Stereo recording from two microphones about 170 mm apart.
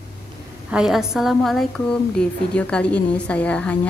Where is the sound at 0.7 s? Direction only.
5° right (ahead or behind).